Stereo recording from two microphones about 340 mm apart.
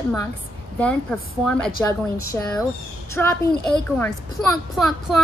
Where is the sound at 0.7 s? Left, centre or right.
Centre.